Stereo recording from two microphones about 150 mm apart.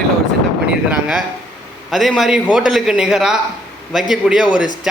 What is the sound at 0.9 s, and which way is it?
A man's voice, 5° right (ahead or behind).